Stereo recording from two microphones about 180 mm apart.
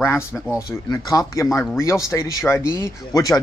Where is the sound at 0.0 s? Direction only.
15° left (ahead or behind).